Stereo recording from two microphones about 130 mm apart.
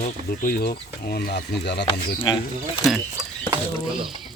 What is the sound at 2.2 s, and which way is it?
Speech, 40° left (ahead or behind).